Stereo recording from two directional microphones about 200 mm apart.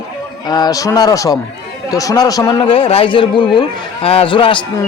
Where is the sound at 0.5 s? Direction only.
20° left (ahead or behind).